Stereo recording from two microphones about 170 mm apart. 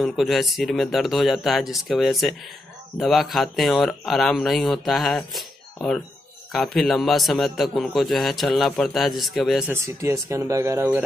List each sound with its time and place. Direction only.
0.0 s a man's voice: centre (ahead or behind)
9.7 s speech: 20° right (ahead or behind)